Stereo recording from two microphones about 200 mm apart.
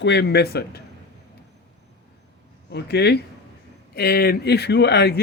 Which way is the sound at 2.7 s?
55° left (ahead or behind).